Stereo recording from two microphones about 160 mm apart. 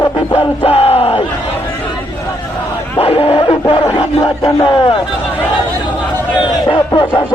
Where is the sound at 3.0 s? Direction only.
35° left (ahead or behind).